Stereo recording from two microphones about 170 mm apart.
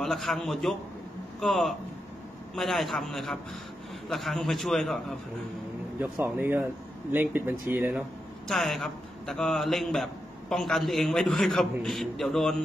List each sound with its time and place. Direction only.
0.0 s a man's voice: centre (ahead or behind)
5.9 s speech: 10° right (ahead or behind)
8.5 s a man's voice: centre (ahead or behind)